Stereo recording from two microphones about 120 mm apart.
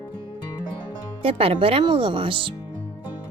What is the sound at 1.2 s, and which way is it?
A woman's voice, 50° right (ahead or behind).